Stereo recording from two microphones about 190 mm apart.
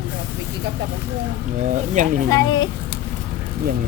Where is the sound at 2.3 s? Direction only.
20° left (ahead or behind).